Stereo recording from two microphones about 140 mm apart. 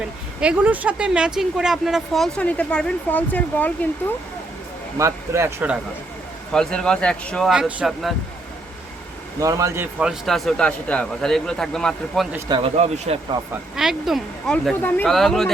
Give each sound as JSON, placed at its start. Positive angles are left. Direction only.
{"t": 0.3, "sound": "speech", "side_deg": -10}
{"t": 4.9, "sound": "speech", "side_deg": -20}
{"t": 6.5, "sound": "speech", "side_deg": 5}
{"t": 9.4, "sound": "speech", "side_deg": -25}
{"t": 10.0, "sound": "speech", "side_deg": 0}
{"t": 12.5, "sound": "speech", "side_deg": -40}
{"t": 13.7, "sound": "speech", "side_deg": 0}
{"t": 14.5, "sound": "speech", "side_deg": 10}
{"t": 15.0, "sound": "speech", "side_deg": 0}